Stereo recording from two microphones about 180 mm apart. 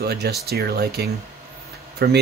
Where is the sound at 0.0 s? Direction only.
65° right (ahead or behind).